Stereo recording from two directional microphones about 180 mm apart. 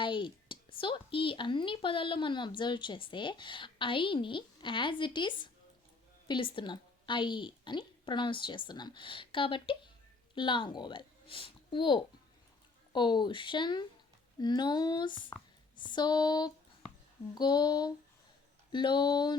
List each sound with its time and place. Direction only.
0.0 s a woman's voice: 25° left (ahead or behind)